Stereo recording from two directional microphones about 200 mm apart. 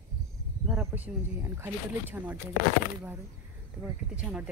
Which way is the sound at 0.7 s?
5° right (ahead or behind).